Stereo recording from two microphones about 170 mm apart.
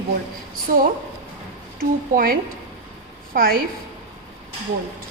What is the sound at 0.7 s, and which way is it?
Speech, 55° right (ahead or behind).